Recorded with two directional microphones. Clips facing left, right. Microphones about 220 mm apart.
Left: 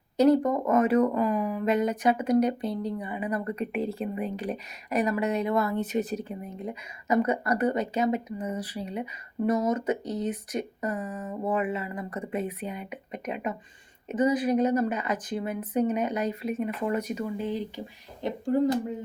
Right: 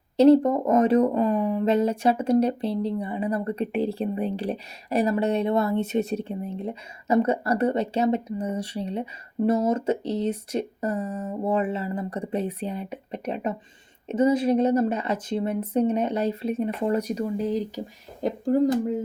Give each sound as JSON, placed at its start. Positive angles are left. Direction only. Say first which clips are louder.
{"t": 0.2, "sound": "speech", "louder": "right 5 dB", "side_deg": -25}